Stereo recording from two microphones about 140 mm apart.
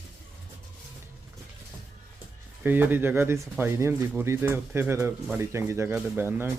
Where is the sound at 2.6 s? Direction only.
15° right (ahead or behind).